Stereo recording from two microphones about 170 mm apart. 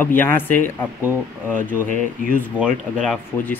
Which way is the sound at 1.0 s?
10° right (ahead or behind).